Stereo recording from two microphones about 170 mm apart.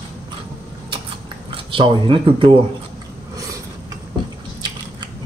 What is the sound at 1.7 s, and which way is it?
Speech, 30° right (ahead or behind).